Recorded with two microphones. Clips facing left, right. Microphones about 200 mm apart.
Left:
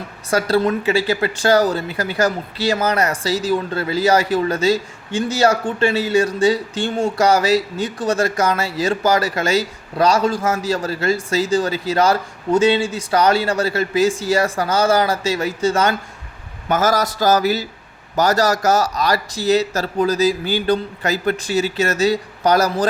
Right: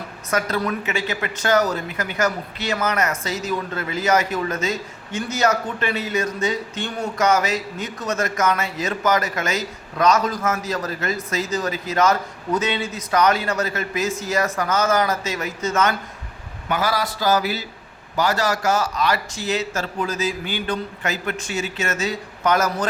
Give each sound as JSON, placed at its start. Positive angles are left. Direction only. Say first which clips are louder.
{"t": 0.3, "sound": "a woman's voice", "louder": "left 6 dB", "side_deg": 30}
{"t": 16.6, "sound": "a man's voice", "louder": "left 5 dB", "side_deg": 45}